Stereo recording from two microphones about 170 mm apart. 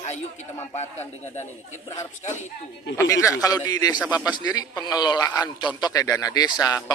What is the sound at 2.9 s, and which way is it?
A man's voice, 15° left (ahead or behind).